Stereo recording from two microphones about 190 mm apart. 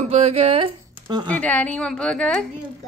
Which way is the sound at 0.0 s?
35° right (ahead or behind).